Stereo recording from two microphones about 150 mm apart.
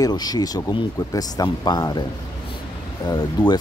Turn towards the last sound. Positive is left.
turn(degrees=30)  # may be behind; listen again after turning